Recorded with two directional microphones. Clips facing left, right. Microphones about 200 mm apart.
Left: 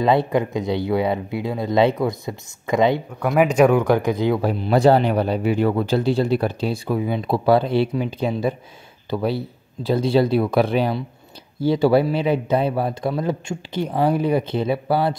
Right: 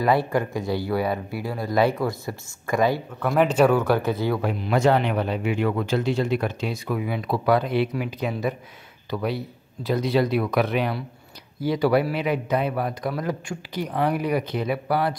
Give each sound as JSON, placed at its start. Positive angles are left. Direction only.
{"t": 0.0, "sound": "speech", "side_deg": 20}
{"t": 3.3, "sound": "speech", "side_deg": 10}
{"t": 4.4, "sound": "speech", "side_deg": 35}